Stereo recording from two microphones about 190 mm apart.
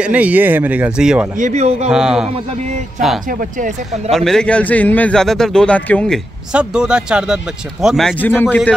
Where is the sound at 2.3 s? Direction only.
35° right (ahead or behind).